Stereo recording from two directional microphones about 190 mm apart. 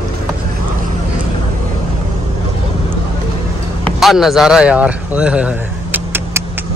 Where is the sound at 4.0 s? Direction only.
Centre (ahead or behind).